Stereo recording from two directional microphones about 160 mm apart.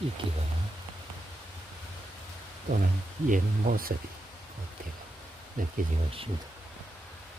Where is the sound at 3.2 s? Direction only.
60° right (ahead or behind).